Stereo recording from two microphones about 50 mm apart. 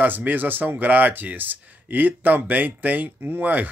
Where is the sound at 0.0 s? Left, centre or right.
Right.